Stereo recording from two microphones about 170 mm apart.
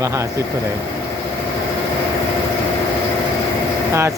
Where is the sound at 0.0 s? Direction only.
20° right (ahead or behind).